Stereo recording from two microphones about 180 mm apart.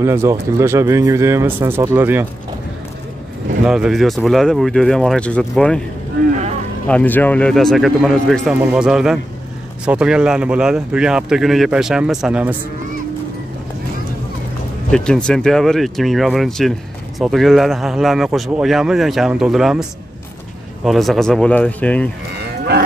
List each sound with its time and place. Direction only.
0.0 s speech: 15° right (ahead or behind)
3.6 s speech: 5° right (ahead or behind)
6.9 s speech: 10° left (ahead or behind)
14.9 s speech: 5° left (ahead or behind)